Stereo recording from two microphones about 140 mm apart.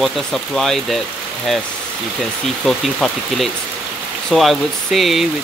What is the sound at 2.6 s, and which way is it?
Speech, centre (ahead or behind).